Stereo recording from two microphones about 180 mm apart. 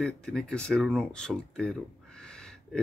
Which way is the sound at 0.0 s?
5° left (ahead or behind).